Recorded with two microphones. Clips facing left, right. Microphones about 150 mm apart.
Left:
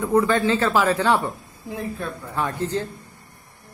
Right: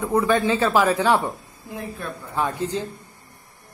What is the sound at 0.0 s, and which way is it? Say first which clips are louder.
Speech: left 1 dB; 15° right (ahead or behind).